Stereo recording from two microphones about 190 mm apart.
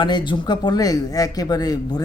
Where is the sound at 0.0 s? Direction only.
25° left (ahead or behind).